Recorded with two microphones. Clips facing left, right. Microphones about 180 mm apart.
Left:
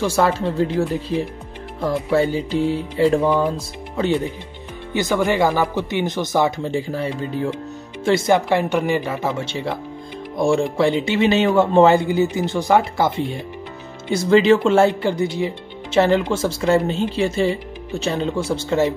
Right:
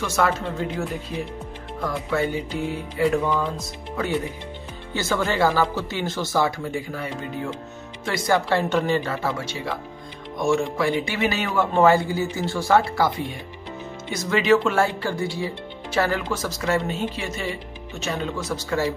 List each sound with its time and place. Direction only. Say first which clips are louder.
0.0 s speech: left 5 dB; 30° left (ahead or behind); by 9.3 s 15° left (ahead or behind)
9.4 s speech: left 4 dB; 25° left (ahead or behind)